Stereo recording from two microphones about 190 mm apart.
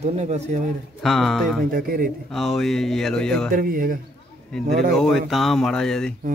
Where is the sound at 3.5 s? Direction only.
45° right (ahead or behind).